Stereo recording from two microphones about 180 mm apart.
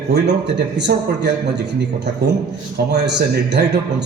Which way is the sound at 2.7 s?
70° right (ahead or behind).